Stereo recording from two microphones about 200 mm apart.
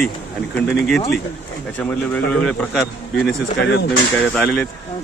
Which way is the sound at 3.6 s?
60° left (ahead or behind).